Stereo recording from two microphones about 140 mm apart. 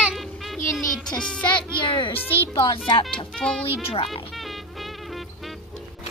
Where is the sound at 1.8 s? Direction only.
35° left (ahead or behind).